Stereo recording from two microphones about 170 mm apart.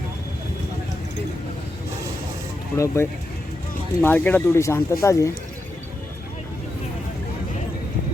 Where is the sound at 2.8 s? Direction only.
15° left (ahead or behind).